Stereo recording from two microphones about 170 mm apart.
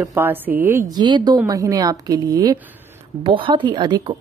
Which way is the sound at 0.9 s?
25° right (ahead or behind).